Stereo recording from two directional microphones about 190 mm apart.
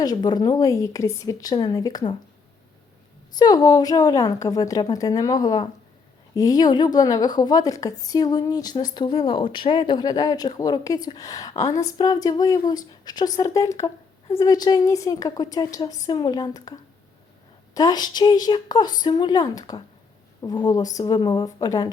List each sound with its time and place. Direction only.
0.0 s a woman's voice: 20° left (ahead or behind)
3.3 s a woman's voice: 20° left (ahead or behind)
17.7 s a woman's voice: 20° left (ahead or behind)